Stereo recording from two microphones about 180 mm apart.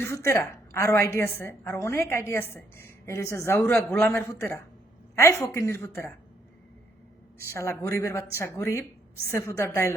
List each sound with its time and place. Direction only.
0.0 s a woman's voice: 15° left (ahead or behind)
7.3 s a woman's voice: 15° left (ahead or behind)